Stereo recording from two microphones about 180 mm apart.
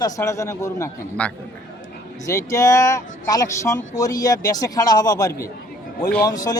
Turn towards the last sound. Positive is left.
turn(degrees=20)  # may be behind; listen again after turning